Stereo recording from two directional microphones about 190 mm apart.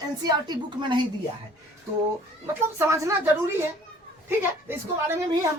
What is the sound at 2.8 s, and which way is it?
A woman's voice, 15° right (ahead or behind).